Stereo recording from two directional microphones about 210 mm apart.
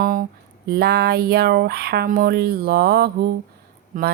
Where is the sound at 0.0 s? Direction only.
40° right (ahead or behind).